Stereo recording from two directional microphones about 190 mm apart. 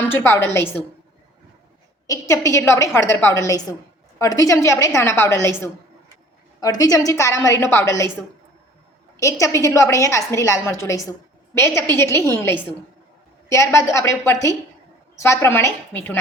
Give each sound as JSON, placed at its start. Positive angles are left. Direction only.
{"t": 0.0, "sound": "a woman's voice", "side_deg": 10}
{"t": 2.0, "sound": "a woman's voice", "side_deg": 15}
{"t": 9.1, "sound": "a woman's voice", "side_deg": 15}